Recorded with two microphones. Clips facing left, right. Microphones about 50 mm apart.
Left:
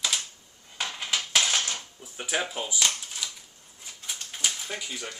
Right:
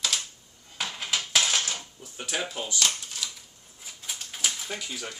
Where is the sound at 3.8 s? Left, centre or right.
Centre.